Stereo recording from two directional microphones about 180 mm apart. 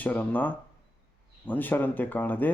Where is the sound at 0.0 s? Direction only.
10° left (ahead or behind).